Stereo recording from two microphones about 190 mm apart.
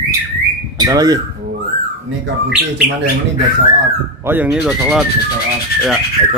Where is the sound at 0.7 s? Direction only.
20° right (ahead or behind).